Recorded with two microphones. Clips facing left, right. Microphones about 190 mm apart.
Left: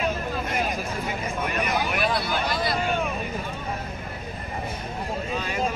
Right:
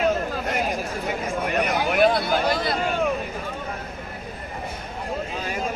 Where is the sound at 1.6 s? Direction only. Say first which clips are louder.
Right 7 dB; 55° right (ahead or behind).